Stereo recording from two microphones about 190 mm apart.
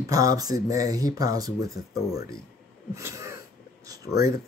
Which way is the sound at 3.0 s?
15° right (ahead or behind).